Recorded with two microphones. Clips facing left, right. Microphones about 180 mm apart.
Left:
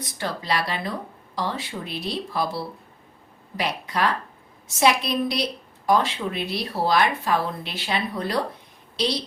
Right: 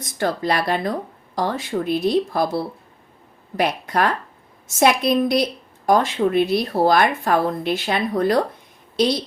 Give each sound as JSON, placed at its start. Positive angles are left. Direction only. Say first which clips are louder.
{"t": 0.0, "sound": "a woman's voice", "louder": "right 8 dB", "side_deg": -50}
{"t": 3.6, "sound": "a woman's voice", "louder": "right 5 dB", "side_deg": -50}